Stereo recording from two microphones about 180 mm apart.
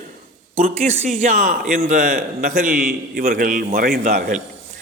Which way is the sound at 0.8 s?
50° right (ahead or behind).